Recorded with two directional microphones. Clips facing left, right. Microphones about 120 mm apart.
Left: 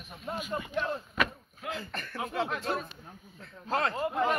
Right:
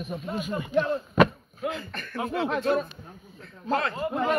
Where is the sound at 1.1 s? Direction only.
30° right (ahead or behind).